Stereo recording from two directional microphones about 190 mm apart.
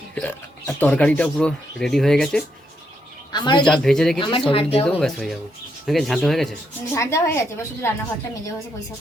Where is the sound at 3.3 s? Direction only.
25° left (ahead or behind).